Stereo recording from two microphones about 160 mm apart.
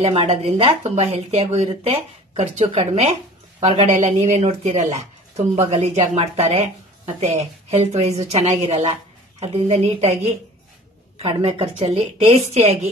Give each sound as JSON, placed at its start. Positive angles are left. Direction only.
{"t": 0.0, "sound": "a woman's voice", "side_deg": -40}